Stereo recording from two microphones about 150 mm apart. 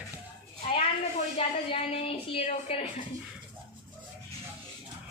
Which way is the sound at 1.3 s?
40° left (ahead or behind).